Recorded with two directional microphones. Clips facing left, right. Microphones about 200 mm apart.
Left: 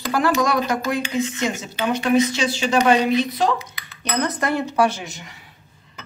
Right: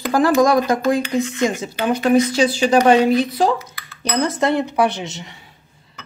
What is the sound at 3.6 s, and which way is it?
Dishes, 20° left (ahead or behind).